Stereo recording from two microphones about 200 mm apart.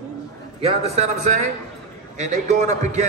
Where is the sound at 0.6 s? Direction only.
30° right (ahead or behind).